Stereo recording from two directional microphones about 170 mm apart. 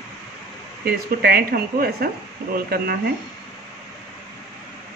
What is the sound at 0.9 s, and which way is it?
Speech, 65° right (ahead or behind).